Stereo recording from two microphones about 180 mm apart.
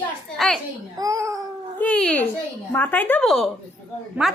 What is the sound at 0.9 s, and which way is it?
Speech, 20° right (ahead or behind).